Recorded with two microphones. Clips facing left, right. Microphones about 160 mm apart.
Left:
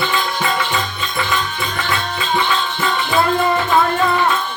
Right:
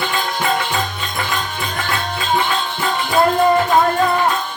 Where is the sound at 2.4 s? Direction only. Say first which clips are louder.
Left 1 dB; 40° right (ahead or behind).